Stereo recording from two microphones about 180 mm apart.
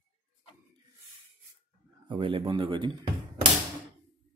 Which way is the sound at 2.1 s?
30° right (ahead or behind).